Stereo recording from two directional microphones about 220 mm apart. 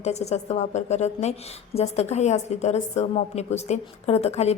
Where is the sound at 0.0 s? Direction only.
30° left (ahead or behind).